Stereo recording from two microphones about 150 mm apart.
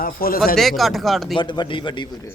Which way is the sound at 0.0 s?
75° left (ahead or behind).